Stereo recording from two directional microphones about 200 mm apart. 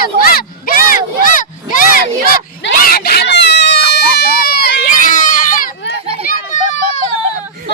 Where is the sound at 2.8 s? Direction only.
50° left (ahead or behind).